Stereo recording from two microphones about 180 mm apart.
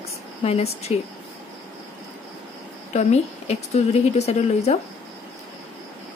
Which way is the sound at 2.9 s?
40° left (ahead or behind).